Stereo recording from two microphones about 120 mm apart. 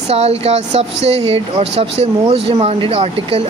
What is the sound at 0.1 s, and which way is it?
Speech, 60° right (ahead or behind).